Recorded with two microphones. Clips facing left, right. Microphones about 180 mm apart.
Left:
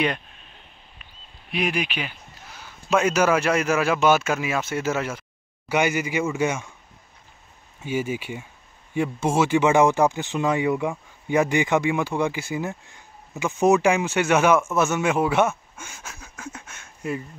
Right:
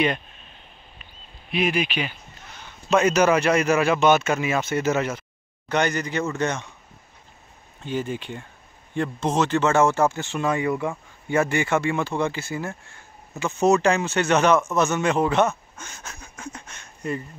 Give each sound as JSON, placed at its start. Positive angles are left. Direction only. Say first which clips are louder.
{"t": 2.0, "sound": "a man's voice", "louder": "right 3 dB", "side_deg": 5}
{"t": 7.8, "sound": "speech", "louder": "left 1 dB", "side_deg": 10}